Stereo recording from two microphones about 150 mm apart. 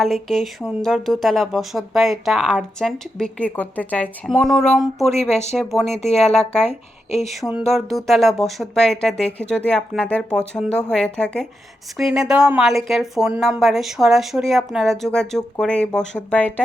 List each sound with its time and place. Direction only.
0.0 s speech: centre (ahead or behind)
5.9 s speech: 45° left (ahead or behind)
6.3 s speech: 5° left (ahead or behind)